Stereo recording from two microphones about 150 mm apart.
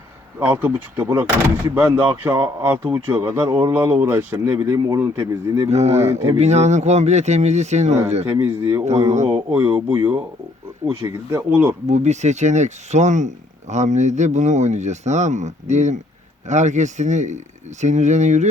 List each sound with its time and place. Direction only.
0.3 s speech: 15° right (ahead or behind)
5.6 s speech: 45° right (ahead or behind)
8.3 s speech: 15° right (ahead or behind)
8.8 s speech: 50° right (ahead or behind)
9.3 s speech: 10° right (ahead or behind)
11.9 s speech: 50° right (ahead or behind)